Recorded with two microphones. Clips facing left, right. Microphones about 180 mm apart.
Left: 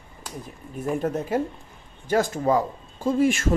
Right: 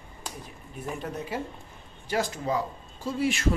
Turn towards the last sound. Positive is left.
turn(degrees=50)  # may be behind; listen again after turning